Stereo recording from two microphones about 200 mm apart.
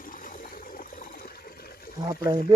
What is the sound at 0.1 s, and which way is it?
Toilet flush, 45° left (ahead or behind).